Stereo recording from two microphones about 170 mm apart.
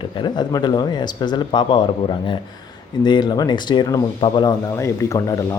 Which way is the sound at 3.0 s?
25° left (ahead or behind).